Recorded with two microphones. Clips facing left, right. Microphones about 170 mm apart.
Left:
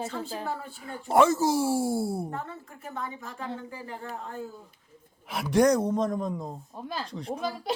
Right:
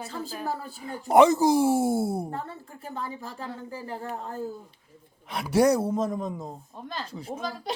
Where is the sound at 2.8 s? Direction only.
30° right (ahead or behind).